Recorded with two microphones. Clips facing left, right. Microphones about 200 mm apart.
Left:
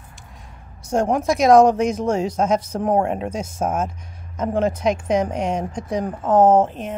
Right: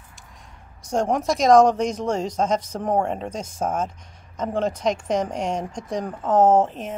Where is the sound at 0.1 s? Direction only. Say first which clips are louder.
Left 4 dB; 5° left (ahead or behind).